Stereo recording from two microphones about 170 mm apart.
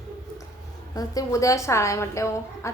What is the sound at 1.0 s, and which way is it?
A woman's voice, 20° left (ahead or behind).